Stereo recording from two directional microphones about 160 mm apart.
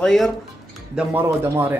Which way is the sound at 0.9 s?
10° right (ahead or behind).